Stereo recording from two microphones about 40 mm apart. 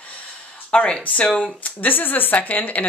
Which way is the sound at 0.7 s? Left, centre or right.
Left.